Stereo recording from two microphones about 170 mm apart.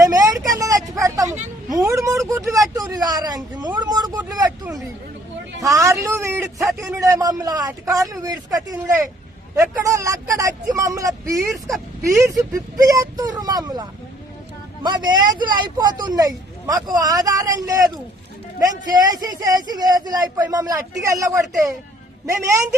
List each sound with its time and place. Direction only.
0.0 s vehicle: 20° right (ahead or behind)
1.7 s a sound: 20° right (ahead or behind)
2.7 s speech: 20° right (ahead or behind)
3.8 s a sound: 25° right (ahead or behind)
5.5 s speech: 20° right (ahead or behind)
12.1 s speech: 20° right (ahead or behind)
14.8 s a man's voice: 25° right (ahead or behind)